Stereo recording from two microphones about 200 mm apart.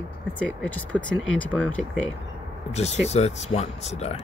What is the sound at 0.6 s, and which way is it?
Speech, 5° left (ahead or behind).